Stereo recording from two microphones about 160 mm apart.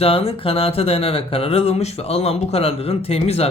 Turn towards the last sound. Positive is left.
turn(degrees=40)  # may be behind; listen again after turning